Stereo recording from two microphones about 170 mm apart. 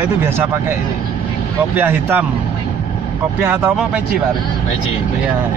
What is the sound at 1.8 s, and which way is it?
Speech, 10° right (ahead or behind).